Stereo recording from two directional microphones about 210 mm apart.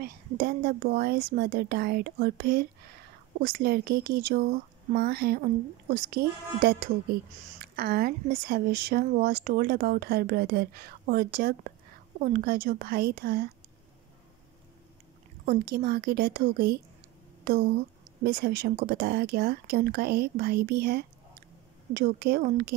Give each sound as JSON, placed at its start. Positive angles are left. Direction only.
{"t": 0.0, "sound": "speech", "side_deg": -45}
{"t": 15.4, "sound": "speech", "side_deg": -45}